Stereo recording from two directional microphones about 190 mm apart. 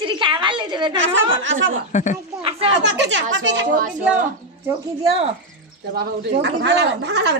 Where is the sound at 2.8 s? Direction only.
70° right (ahead or behind).